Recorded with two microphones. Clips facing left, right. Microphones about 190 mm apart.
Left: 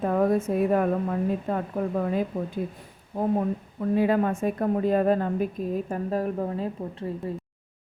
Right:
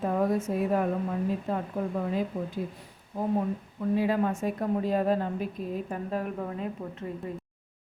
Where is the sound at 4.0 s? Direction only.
55° left (ahead or behind).